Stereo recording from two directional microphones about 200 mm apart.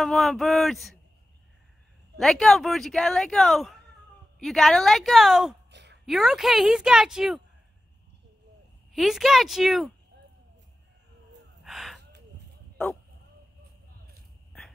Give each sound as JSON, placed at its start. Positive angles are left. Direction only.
{"t": 0.0, "sound": "speech", "side_deg": 0}
{"t": 2.1, "sound": "speech", "side_deg": 0}
{"t": 5.7, "sound": "a sound", "side_deg": -60}
{"t": 6.0, "sound": "speech", "side_deg": 0}
{"t": 8.9, "sound": "speech", "side_deg": 0}
{"t": 11.6, "sound": "a sound", "side_deg": 0}